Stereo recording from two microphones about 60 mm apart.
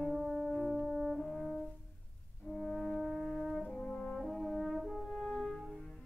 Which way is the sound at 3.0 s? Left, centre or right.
Centre.